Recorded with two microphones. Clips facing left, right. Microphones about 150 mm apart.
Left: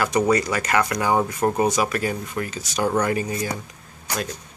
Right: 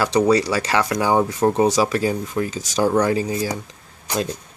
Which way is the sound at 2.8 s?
Centre (ahead or behind).